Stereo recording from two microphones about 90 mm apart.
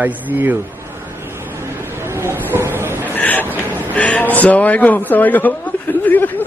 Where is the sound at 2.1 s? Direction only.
30° right (ahead or behind).